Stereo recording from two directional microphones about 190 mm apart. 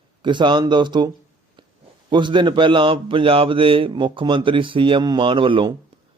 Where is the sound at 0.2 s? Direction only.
25° right (ahead or behind).